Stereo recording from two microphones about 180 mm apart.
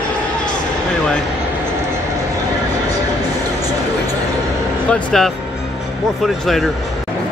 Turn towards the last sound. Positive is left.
turn(degrees=0)  # may be behind; listen again after turning